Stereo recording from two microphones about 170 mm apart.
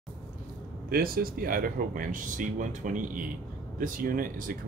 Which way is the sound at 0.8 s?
60° right (ahead or behind).